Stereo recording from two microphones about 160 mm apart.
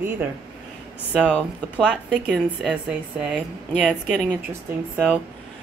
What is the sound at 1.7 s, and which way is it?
Speech, 5° right (ahead or behind).